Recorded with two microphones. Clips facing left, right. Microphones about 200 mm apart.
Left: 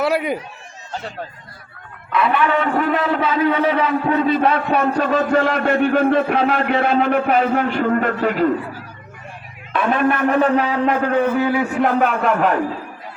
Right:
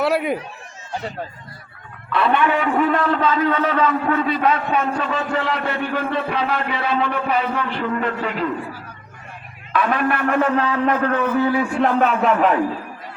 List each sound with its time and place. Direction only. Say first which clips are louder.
0.0 s a man's voice: even; centre (ahead or behind)
2.1 s a man's voice: even; 30° right (ahead or behind)
2.7 s a man's voice: even; centre (ahead or behind)
4.3 s a man's voice: left 3 dB; 30° left (ahead or behind)
9.7 s a man's voice: left 2 dB; 25° left (ahead or behind); by 12.5 s centre (ahead or behind)